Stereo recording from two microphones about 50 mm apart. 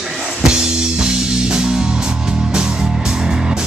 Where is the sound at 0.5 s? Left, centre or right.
Centre.